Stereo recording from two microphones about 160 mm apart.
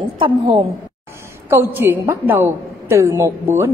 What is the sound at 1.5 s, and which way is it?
A man's voice, 15° right (ahead or behind).